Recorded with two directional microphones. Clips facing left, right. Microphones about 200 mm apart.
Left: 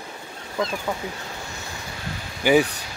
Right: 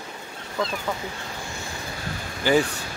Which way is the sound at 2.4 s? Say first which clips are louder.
Left 3 dB; 15° left (ahead or behind).